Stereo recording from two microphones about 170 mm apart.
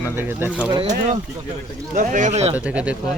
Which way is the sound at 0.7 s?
25° right (ahead or behind).